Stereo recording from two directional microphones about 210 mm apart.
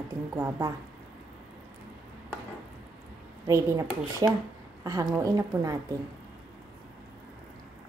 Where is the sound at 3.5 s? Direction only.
15° right (ahead or behind).